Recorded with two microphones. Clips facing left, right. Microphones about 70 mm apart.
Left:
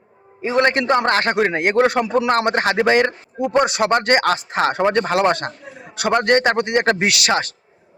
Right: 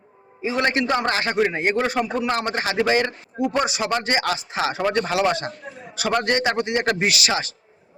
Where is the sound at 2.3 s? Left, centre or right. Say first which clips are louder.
Left 6 dB; left.